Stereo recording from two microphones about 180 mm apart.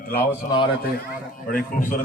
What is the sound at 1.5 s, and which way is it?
Speech, 50° left (ahead or behind).